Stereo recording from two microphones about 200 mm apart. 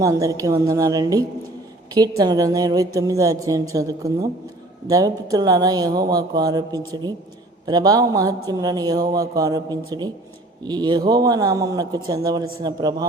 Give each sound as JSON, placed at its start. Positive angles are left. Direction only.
{"t": 0.0, "sound": "a woman's voice", "side_deg": -15}